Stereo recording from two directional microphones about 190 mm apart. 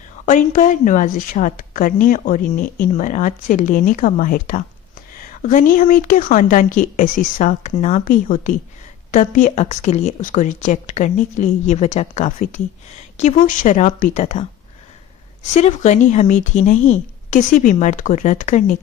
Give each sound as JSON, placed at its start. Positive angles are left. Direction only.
{"t": 0.2, "sound": "a woman's voice", "side_deg": 40}
{"t": 15.4, "sound": "a woman's voice", "side_deg": 35}